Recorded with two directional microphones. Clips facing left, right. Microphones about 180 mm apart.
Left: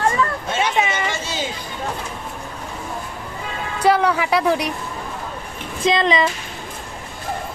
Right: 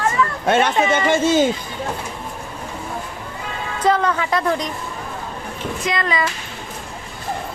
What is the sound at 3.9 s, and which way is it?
Speech, 10° left (ahead or behind).